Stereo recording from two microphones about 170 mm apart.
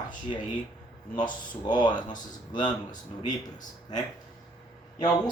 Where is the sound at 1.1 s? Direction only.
25° left (ahead or behind).